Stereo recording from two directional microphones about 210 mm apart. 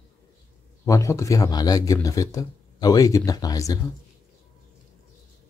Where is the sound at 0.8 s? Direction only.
15° left (ahead or behind).